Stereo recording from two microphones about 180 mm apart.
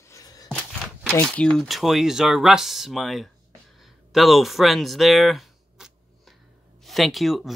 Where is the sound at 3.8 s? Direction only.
Centre (ahead or behind).